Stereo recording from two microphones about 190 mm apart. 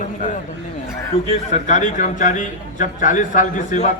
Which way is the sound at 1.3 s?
40° left (ahead or behind).